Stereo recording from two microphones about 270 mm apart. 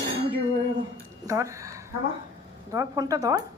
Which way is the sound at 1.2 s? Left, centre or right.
Centre.